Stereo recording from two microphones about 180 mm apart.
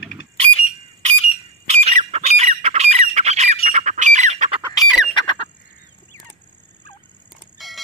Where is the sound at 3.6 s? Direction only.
40° right (ahead or behind).